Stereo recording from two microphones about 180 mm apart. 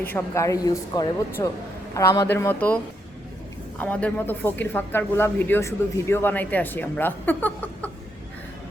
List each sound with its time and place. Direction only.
0.1 s a man's voice: 15° left (ahead or behind)